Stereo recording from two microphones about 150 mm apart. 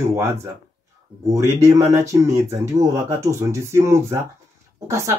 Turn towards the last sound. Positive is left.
turn(degrees=-20)  # may be behind; listen again after turning